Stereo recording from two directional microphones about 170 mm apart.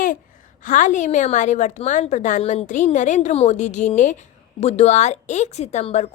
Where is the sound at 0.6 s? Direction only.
50° left (ahead or behind).